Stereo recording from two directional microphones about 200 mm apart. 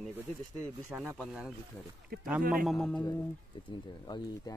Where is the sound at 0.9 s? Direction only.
Centre (ahead or behind).